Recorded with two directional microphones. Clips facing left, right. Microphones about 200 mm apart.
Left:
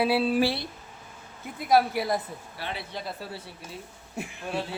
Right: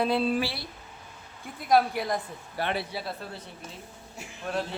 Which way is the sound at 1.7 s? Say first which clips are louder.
Left 1 dB; 5° left (ahead or behind).